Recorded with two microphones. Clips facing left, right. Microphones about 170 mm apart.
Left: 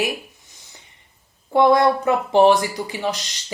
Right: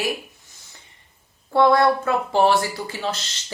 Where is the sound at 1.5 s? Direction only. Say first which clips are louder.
Left 1 dB; 15° left (ahead or behind).